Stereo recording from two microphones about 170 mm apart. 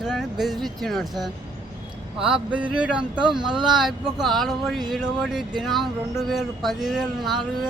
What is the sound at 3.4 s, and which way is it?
Speech, 25° right (ahead or behind).